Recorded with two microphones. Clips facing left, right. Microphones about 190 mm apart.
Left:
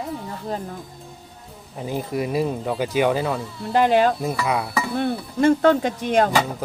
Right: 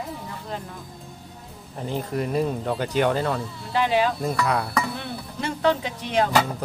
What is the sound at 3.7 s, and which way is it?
Speech, 50° left (ahead or behind).